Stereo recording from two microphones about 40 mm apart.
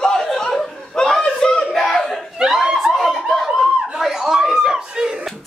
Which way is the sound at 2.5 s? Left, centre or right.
Centre.